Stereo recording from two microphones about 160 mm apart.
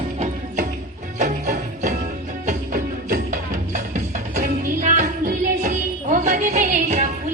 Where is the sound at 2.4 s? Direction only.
60° right (ahead or behind).